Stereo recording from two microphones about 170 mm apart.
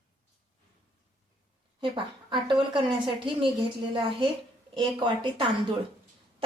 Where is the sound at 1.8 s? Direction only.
30° right (ahead or behind).